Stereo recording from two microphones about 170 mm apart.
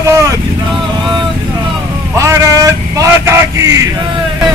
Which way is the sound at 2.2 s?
20° right (ahead or behind).